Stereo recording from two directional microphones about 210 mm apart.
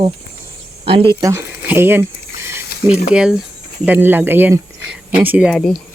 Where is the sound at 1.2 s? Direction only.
15° right (ahead or behind).